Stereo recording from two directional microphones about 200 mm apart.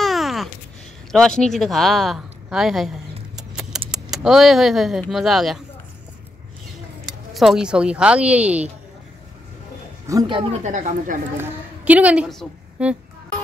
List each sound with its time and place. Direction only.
0.0 s a sound: centre (ahead or behind)
1.1 s speech: 5° left (ahead or behind)
3.3 s a sound: centre (ahead or behind)
3.9 s speech: centre (ahead or behind)
7.1 s speech: centre (ahead or behind)
10.0 s speech: 20° right (ahead or behind); by 11.1 s 40° right (ahead or behind)
11.8 s a woman's voice: 5° right (ahead or behind)